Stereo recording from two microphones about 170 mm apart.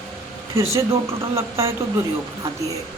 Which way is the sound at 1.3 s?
15° right (ahead or behind).